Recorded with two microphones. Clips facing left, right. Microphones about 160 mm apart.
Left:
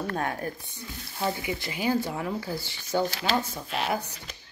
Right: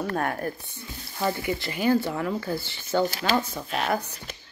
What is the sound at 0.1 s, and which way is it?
Speech, 45° right (ahead or behind).